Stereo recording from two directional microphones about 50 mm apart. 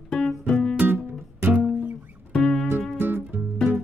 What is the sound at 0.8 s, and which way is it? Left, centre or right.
Music, right.